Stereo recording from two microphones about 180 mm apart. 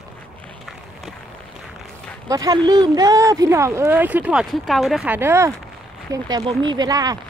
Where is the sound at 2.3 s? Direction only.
20° right (ahead or behind).